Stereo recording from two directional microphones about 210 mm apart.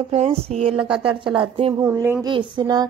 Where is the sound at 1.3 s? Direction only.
25° right (ahead or behind).